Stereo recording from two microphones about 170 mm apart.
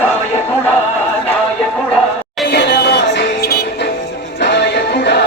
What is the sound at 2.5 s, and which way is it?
Music, 80° left.